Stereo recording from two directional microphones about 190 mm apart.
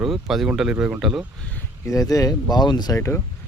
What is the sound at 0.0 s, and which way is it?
Speech, centre (ahead or behind).